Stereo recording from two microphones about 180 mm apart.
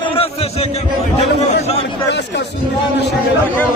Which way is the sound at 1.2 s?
35° left (ahead or behind).